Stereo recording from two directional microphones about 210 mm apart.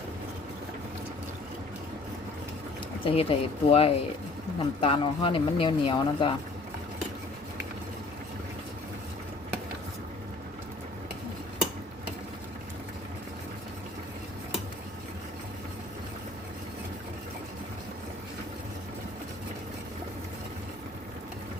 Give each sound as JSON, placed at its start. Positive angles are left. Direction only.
{"t": 3.0, "sound": "speech", "side_deg": 25}